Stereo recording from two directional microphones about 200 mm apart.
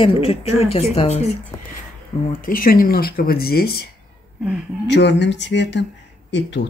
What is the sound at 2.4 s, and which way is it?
Speech, 45° left (ahead or behind).